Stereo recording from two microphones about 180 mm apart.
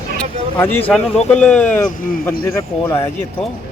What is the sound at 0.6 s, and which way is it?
Speech, 10° left (ahead or behind).